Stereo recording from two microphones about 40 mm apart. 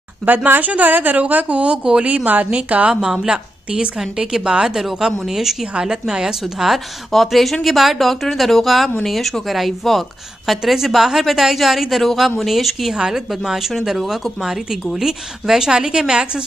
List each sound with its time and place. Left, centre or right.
0.5 s a woman's voice: right
1.1 s a woman's voice: right
2.9 s a woman's voice: centre
7.2 s a woman's voice: centre
12.9 s a woman's voice: right
13.3 s speech: centre